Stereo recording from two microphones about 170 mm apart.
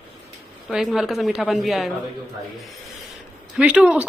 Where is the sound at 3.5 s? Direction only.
5° right (ahead or behind).